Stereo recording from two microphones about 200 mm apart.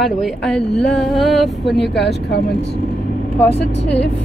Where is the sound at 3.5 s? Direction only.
60° left (ahead or behind).